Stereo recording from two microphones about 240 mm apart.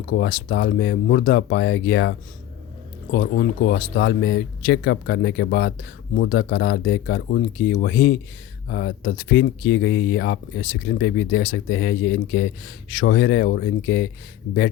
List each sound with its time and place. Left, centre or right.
0.1 s speech: left
3.2 s speech: left